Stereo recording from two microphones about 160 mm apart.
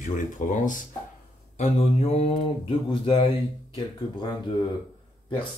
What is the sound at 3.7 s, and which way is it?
Speech, 25° left (ahead or behind).